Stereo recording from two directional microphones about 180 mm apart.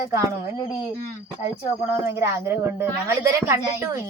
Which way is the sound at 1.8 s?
10° right (ahead or behind).